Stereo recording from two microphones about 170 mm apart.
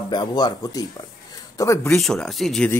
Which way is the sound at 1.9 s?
5° left (ahead or behind).